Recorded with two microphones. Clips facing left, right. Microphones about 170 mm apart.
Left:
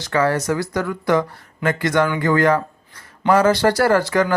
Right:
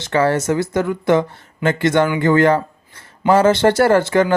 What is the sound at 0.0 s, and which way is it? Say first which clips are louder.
Speech: right 2 dB; 25° right (ahead or behind).